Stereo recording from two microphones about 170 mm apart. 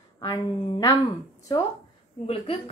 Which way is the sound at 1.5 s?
25° left (ahead or behind).